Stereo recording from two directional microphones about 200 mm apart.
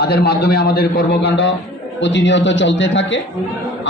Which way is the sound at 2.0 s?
65° left (ahead or behind).